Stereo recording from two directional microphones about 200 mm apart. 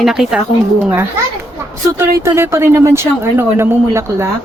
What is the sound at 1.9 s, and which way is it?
Speech, 15° right (ahead or behind).